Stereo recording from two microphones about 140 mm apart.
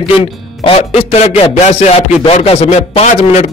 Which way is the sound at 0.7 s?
45° left (ahead or behind).